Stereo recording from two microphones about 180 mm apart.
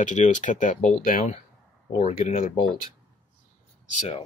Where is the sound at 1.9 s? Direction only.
40° left (ahead or behind).